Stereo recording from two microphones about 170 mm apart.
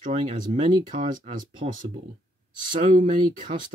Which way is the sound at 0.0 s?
40° right (ahead or behind).